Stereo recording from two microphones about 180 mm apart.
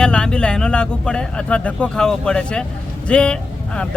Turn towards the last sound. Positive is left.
turn(degrees=5)  # may be behind; listen again after turning